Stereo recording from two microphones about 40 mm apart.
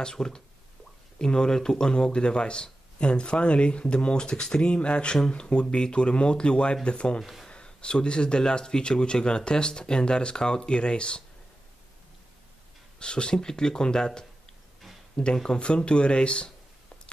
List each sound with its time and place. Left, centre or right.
0.0 s speech: centre
13.0 s speech: left